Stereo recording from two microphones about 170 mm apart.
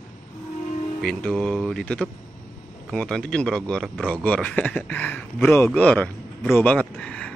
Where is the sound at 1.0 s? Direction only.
Centre (ahead or behind).